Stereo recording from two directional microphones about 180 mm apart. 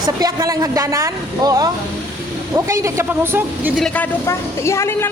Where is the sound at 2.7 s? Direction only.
15° right (ahead or behind).